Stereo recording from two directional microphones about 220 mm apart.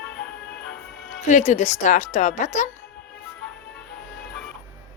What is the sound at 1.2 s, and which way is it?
A woman's voice, 35° left (ahead or behind).